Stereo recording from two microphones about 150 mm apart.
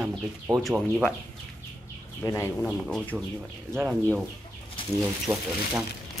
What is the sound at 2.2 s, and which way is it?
Speech, 20° left (ahead or behind).